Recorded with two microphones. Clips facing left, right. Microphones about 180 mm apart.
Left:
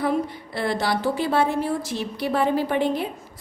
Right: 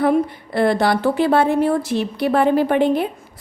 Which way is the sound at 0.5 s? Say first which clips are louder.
Right 7 dB; 55° right (ahead or behind).